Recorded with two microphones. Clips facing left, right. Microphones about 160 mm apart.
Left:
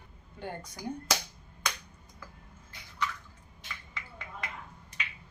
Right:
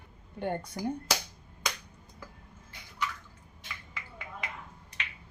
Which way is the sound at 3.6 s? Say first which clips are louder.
Even; 5° right (ahead or behind).